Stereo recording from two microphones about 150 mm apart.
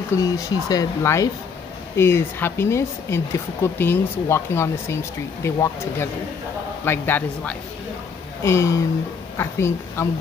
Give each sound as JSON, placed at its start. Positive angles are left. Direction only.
{"t": 0.2, "sound": "speech", "side_deg": 25}